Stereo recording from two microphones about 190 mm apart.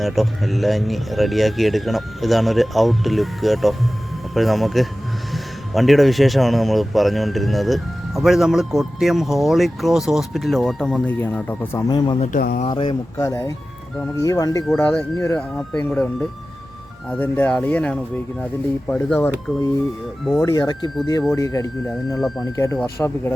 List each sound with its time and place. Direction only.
0.0 s speech: centre (ahead or behind)
11.9 s speech: 25° left (ahead or behind)
12.2 s speech: 45° left (ahead or behind)
12.6 s speech: 25° left (ahead or behind)
14.7 s speech: 5° left (ahead or behind)
20.4 s speech: 20° left (ahead or behind)